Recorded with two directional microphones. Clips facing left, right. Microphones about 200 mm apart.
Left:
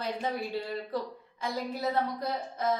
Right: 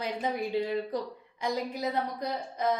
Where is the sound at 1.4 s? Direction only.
15° right (ahead or behind).